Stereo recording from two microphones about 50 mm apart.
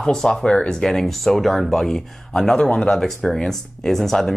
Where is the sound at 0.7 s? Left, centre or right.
Centre.